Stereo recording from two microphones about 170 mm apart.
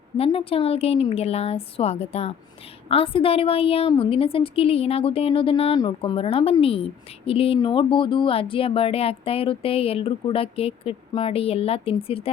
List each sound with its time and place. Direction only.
0.2 s a woman's voice: 35° left (ahead or behind)